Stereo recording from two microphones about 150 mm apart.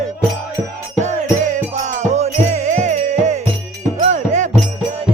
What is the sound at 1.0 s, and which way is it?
Music, 50° right (ahead or behind).